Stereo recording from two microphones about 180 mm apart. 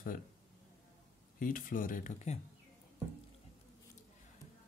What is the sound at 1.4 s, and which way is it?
Speech, 50° left (ahead or behind).